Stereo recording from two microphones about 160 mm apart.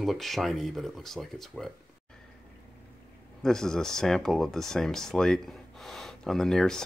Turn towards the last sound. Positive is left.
turn(degrees=5)  # may be behind; listen again after turning